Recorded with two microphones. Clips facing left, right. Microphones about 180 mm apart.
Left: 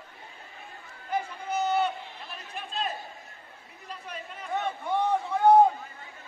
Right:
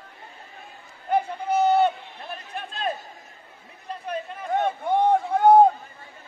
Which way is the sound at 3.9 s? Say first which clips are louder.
Right 9 dB; 60° right (ahead or behind).